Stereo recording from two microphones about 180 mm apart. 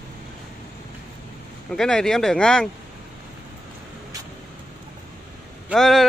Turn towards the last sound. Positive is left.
turn(degrees=0)  # may be behind; listen again after turning